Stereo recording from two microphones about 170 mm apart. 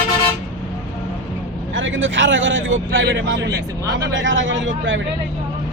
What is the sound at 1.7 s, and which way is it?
Speech, 90° right.